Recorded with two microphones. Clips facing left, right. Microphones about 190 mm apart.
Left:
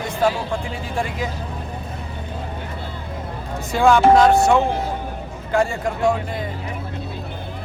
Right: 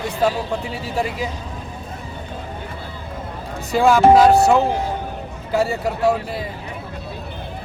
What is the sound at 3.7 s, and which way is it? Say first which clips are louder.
Speech: right 1 dB; 5° right (ahead or behind).